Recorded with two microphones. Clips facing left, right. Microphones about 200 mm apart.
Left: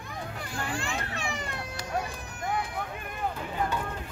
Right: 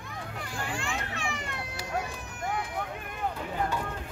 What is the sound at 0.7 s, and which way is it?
Children playing, 35° left (ahead or behind).